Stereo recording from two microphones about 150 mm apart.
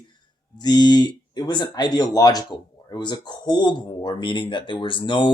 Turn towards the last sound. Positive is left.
turn(degrees=35)  # may be behind; listen again after turning